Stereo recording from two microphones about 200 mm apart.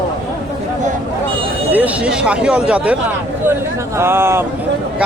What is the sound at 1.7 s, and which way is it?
Speech, 5° right (ahead or behind).